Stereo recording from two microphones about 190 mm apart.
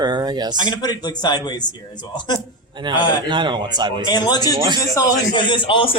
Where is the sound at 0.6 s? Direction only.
20° left (ahead or behind).